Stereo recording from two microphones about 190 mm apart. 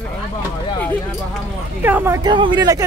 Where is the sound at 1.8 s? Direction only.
10° right (ahead or behind).